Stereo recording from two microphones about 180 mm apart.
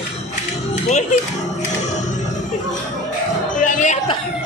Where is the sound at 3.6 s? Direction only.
40° left (ahead or behind).